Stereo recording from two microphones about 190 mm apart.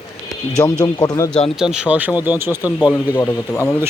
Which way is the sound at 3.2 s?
10° left (ahead or behind).